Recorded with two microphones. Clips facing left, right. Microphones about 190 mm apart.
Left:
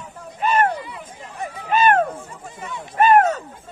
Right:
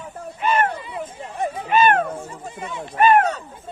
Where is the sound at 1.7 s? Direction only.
40° left (ahead or behind).